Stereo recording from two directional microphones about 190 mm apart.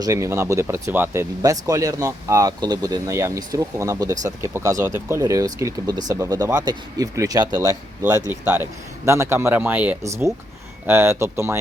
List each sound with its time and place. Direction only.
0.0 s speech: 15° right (ahead or behind)